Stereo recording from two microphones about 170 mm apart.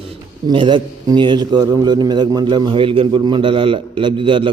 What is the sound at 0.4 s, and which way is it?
A man's voice, 30° right (ahead or behind).